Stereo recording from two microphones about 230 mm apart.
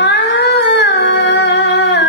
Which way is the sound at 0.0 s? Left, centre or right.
Left.